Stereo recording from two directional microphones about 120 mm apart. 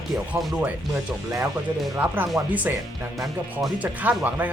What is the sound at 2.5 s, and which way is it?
Speech, 15° right (ahead or behind).